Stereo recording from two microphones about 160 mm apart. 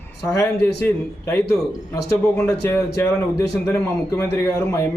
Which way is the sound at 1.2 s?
20° left (ahead or behind).